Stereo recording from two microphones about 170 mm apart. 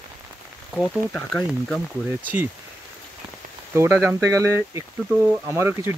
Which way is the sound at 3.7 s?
15° right (ahead or behind).